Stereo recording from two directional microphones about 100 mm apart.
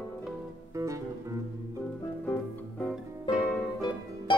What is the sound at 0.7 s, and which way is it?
Music, 30° right (ahead or behind).